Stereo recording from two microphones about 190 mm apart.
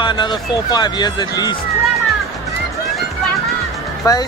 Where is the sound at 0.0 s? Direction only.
25° left (ahead or behind).